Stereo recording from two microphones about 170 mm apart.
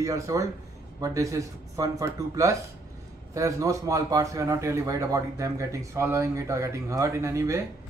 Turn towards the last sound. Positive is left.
turn(degrees=-15)  # may be behind; listen again after turning